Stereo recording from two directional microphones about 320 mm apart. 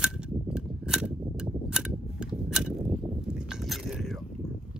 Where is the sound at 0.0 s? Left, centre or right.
Centre.